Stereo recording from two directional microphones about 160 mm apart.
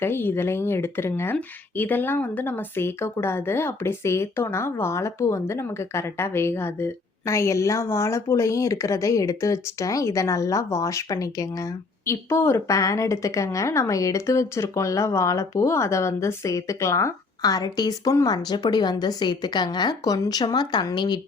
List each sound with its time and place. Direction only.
0.0 s speech: 15° left (ahead or behind)